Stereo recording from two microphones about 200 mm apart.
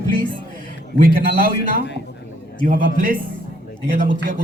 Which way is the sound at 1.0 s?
50° right (ahead or behind).